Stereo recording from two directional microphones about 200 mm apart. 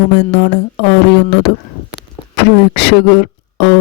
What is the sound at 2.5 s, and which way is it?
Speech, 55° left (ahead or behind).